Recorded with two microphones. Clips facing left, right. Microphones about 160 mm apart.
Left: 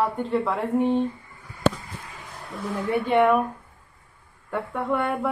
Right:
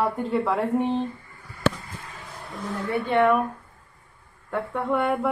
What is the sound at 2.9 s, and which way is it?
Speech, 15° left (ahead or behind).